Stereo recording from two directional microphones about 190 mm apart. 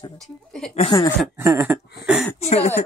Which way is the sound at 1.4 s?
10° right (ahead or behind).